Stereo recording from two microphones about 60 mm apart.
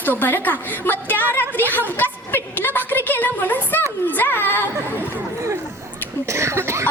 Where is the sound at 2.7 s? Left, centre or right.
Left.